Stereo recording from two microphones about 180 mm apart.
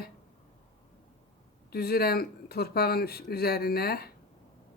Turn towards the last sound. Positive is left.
turn(degrees=60)  # may be behind; listen again after turning